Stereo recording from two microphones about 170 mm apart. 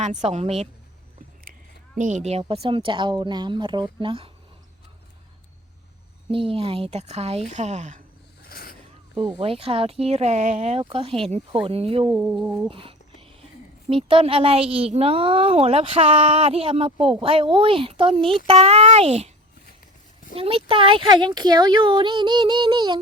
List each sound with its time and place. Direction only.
0.0 s a woman's voice: 45° right (ahead or behind)
2.0 s speech: 45° right (ahead or behind); by 4.3 s 30° right (ahead or behind)
6.3 s a woman's voice: 30° right (ahead or behind)
8.4 s zipper: 60° left (ahead or behind)
9.4 s a woman's voice: 35° right (ahead or behind)
12.1 s speech: 5° right (ahead or behind)
12.6 s a sound: 30° right (ahead or behind)
13.9 s a woman's voice: 30° right (ahead or behind)
20.3 s speech: 35° right (ahead or behind)